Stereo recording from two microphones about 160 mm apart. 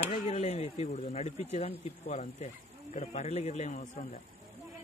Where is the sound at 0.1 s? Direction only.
40° left (ahead or behind).